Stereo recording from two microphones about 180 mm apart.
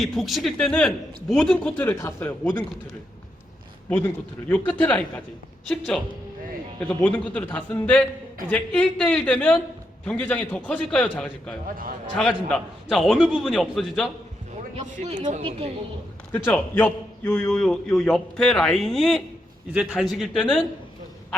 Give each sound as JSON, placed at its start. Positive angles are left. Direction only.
{"t": 0.0, "sound": "a man's voice", "side_deg": 0}
{"t": 3.8, "sound": "a man's voice", "side_deg": 10}
{"t": 14.8, "sound": "speech", "side_deg": -30}
{"t": 16.3, "sound": "a man's voice", "side_deg": 10}